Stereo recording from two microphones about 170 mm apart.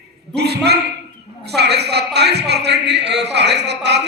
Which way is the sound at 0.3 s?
75° right (ahead or behind).